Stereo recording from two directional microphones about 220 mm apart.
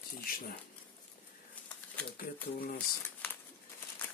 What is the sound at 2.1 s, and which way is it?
Speech, 40° left (ahead or behind).